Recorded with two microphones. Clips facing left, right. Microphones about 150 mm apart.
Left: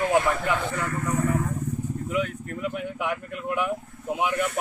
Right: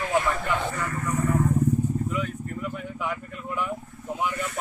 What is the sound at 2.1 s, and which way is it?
Speech, 80° left.